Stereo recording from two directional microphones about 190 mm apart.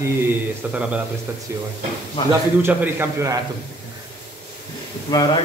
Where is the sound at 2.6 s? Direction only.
10° right (ahead or behind).